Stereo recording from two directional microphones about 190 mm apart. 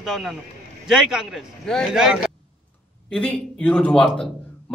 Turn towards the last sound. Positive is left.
turn(degrees=5)  # may be behind; listen again after turning